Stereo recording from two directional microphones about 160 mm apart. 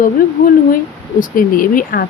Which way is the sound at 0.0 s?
60° left (ahead or behind).